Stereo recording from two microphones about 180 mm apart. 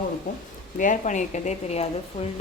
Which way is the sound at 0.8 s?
45° left (ahead or behind).